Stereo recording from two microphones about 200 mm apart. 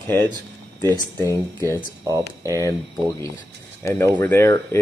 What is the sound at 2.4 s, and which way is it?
Speech, 15° left (ahead or behind).